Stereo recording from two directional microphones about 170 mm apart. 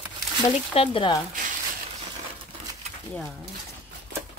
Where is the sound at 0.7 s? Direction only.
30° left (ahead or behind).